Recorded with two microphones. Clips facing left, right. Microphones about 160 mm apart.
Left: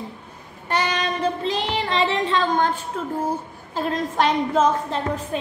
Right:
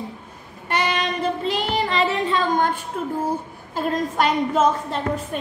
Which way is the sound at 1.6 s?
40° right (ahead or behind).